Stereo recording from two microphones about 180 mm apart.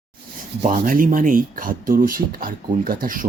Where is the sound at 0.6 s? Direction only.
50° right (ahead or behind).